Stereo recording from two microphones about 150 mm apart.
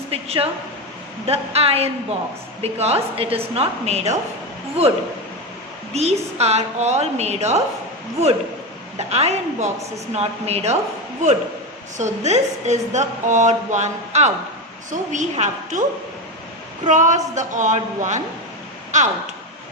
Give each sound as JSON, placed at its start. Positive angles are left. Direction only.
{"t": 0.1, "sound": "a woman's voice", "side_deg": -40}
{"t": 9.0, "sound": "a woman's voice", "side_deg": -45}
{"t": 11.9, "sound": "a woman's voice", "side_deg": -50}
{"t": 16.8, "sound": "a woman's voice", "side_deg": -55}